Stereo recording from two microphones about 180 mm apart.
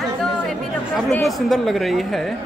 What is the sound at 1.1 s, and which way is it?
Speech, centre (ahead or behind).